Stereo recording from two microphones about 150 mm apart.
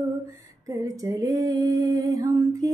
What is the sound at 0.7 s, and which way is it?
Female singing, 20° right (ahead or behind).